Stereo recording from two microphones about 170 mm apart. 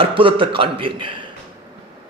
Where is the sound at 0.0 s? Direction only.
30° right (ahead or behind).